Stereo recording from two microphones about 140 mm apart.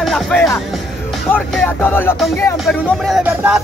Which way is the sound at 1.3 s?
15° left (ahead or behind).